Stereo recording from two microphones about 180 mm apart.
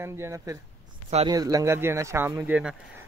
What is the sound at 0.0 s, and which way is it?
Speech, 15° right (ahead or behind).